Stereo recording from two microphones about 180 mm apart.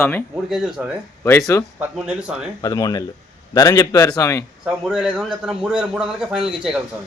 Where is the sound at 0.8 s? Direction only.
5° right (ahead or behind).